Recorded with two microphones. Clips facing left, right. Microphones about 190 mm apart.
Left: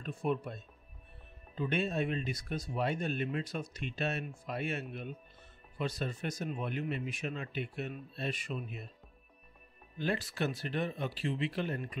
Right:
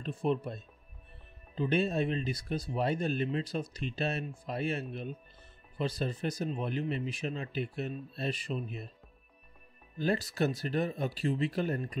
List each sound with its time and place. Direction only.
0.0 s speech: 30° right (ahead or behind)
9.9 s speech: 40° right (ahead or behind)